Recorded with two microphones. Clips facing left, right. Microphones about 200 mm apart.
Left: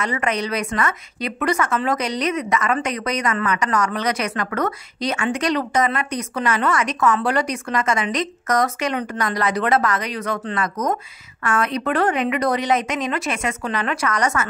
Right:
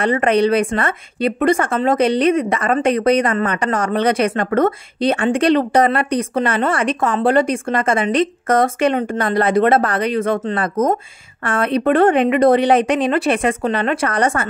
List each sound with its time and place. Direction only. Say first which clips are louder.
0.0 s a woman's voice: right 9 dB; 30° right (ahead or behind)